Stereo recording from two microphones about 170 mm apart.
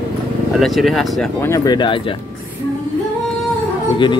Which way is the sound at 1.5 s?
25° left (ahead or behind).